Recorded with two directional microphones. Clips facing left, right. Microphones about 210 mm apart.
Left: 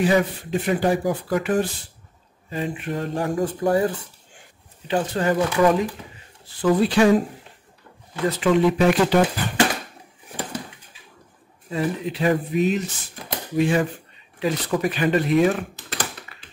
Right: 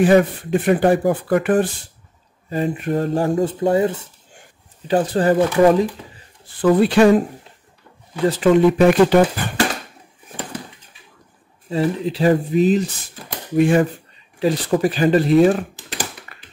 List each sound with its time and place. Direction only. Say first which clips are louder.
0.0 s speech: right 6 dB; 50° right (ahead or behind)
2.5 s speech: right 6 dB; 40° right (ahead or behind)
3.3 s speech: right 4 dB; 25° right (ahead or behind)
4.8 s speech: right 5 dB; 35° right (ahead or behind)
6.6 s speech: right 4 dB; 60° right (ahead or behind)
8.3 s speech: right 5 dB; 45° right (ahead or behind)
11.7 s speech: right 5 dB; 30° right (ahead or behind)
13.6 s speech: right 5 dB; 50° right (ahead or behind)
14.4 s speech: right 5 dB; 35° right (ahead or behind)
15.7 s typing: right 1 dB; 15° right (ahead or behind)
16.3 s tap: right 2 dB; 55° right (ahead or behind)